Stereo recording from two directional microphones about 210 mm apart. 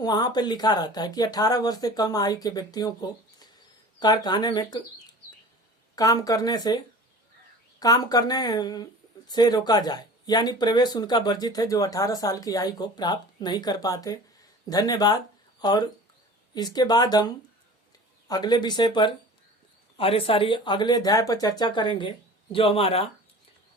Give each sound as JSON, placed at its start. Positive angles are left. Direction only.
{"t": 0.0, "sound": "speech", "side_deg": 20}
{"t": 6.0, "sound": "speech", "side_deg": 15}
{"t": 7.8, "sound": "speech", "side_deg": 15}
{"t": 18.3, "sound": "speech", "side_deg": 20}